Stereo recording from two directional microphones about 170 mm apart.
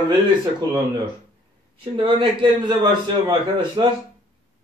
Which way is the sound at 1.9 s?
30° right (ahead or behind).